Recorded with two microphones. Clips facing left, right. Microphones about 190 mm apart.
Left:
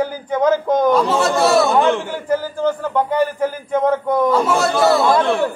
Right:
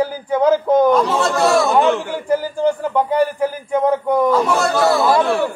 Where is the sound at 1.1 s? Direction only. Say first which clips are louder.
Left 1 dB; centre (ahead or behind).